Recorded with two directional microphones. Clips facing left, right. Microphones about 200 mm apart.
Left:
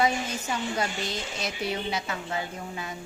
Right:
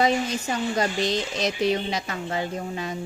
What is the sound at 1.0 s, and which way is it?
Speech, 90° right.